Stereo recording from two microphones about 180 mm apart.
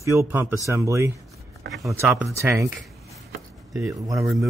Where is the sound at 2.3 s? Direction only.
15° right (ahead or behind).